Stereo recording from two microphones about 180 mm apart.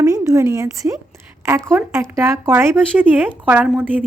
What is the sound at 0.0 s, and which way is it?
A woman's voice, 15° right (ahead or behind).